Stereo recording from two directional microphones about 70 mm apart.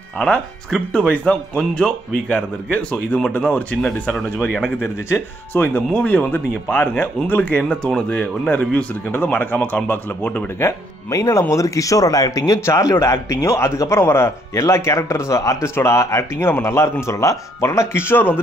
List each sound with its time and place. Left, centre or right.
0.2 s speech: centre
5.1 s speech: left
5.9 s speech: left
11.1 s a man's voice: left
12.5 s a man's voice: left